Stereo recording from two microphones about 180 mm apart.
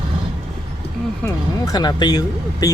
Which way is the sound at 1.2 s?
20° left (ahead or behind).